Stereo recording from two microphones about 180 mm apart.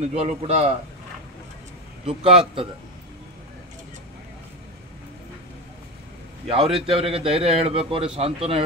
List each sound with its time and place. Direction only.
0.1 s a man's voice: 35° right (ahead or behind)
2.0 s a man's voice: 30° right (ahead or behind)
6.4 s a man's voice: 35° right (ahead or behind)